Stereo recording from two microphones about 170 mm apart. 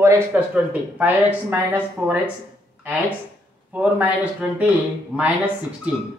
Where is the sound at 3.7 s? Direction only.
10° right (ahead or behind).